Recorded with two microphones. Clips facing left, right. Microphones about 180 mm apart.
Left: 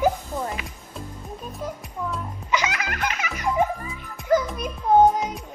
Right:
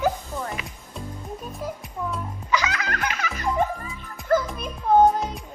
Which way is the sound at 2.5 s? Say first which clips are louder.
Even; 20° left (ahead or behind).